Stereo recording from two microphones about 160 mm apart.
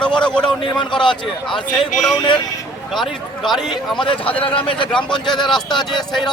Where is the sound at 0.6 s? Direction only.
30° left (ahead or behind).